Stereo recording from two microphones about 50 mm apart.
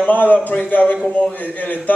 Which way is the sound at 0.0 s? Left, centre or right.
Left.